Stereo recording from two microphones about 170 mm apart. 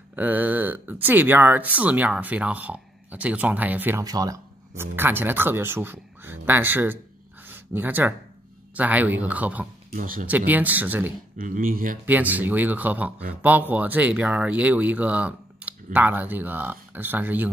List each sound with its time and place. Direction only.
0.1 s speech: 10° right (ahead or behind)
4.0 s speech: 20° right (ahead or behind)
7.4 s a sound: 10° right (ahead or behind)
8.7 s speech: 10° right (ahead or behind)
9.9 s speech: 55° right (ahead or behind)
10.2 s speech: 10° right (ahead or behind)
11.3 s speech: 50° right (ahead or behind)
12.1 s speech: 10° right (ahead or behind)